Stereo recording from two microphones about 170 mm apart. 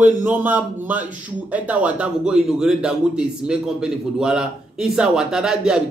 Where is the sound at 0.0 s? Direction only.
10° right (ahead or behind).